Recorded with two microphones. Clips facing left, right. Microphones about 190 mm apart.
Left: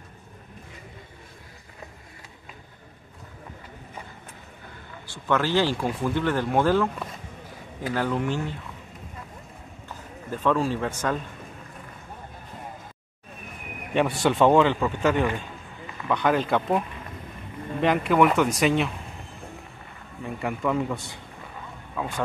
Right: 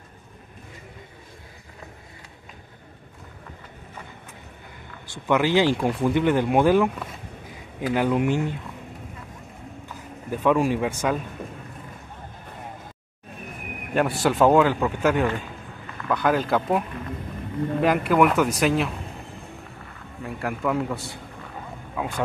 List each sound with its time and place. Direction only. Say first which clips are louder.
5.0 s speech: right 3 dB; 15° right (ahead or behind)
7.9 s speech: right 4 dB; 15° right (ahead or behind)
10.3 s speech: right 3 dB; 15° right (ahead or behind)
13.9 s a man's voice: right 1 dB; 5° right (ahead or behind)
17.8 s a man's voice: even; 5° right (ahead or behind)
20.2 s a man's voice: right 1 dB; centre (ahead or behind)
21.9 s wild animals: right 1 dB; 10° right (ahead or behind)